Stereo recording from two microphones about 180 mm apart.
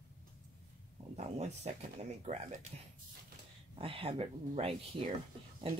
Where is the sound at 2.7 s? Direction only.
35° right (ahead or behind).